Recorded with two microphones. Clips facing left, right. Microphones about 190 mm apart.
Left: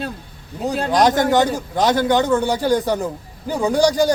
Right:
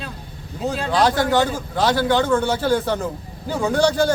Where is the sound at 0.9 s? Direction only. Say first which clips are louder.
Left 3 dB; 20° left (ahead or behind).